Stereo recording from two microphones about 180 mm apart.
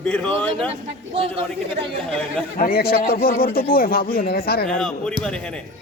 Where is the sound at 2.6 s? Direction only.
55° left (ahead or behind).